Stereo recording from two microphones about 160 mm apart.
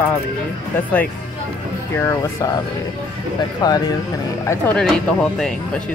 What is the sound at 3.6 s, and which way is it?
Speech, 25° left (ahead or behind).